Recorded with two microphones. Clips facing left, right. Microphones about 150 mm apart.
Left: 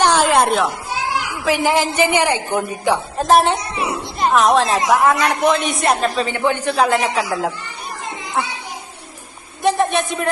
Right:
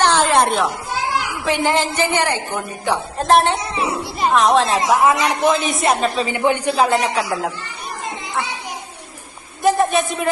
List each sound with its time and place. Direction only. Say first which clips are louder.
0.0 s children playing: left 1 dB; 10° left (ahead or behind)
1.5 s a woman's voice: left 2 dB; 5° left (ahead or behind)
3.2 s speech: even; centre (ahead or behind)
3.6 s speech: right 1 dB; 25° right (ahead or behind)
4.2 s a woman's voice: left 1 dB; centre (ahead or behind)
6.4 s a man's voice: right 2 dB; 15° right (ahead or behind)
6.7 s speech: even; centre (ahead or behind)
9.6 s speech: right 1 dB; centre (ahead or behind)